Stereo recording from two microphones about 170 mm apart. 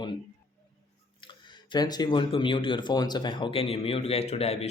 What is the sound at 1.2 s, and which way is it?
Speech, 25° left (ahead or behind).